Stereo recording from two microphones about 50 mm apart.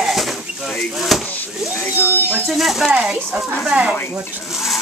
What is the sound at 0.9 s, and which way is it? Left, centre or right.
Speech, centre.